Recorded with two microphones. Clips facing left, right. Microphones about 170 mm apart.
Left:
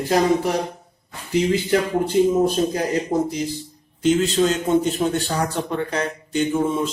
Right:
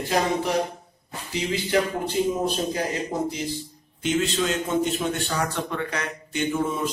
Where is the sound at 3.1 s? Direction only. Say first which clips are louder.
Left 5 dB; 30° left (ahead or behind).